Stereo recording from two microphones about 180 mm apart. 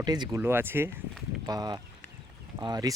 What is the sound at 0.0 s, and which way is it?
Speech, 20° right (ahead or behind).